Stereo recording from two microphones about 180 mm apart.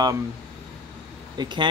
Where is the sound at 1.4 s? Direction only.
25° right (ahead or behind).